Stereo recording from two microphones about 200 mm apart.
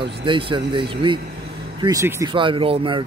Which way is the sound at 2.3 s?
25° right (ahead or behind).